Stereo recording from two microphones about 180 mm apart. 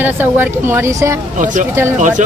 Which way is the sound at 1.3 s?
45° right (ahead or behind).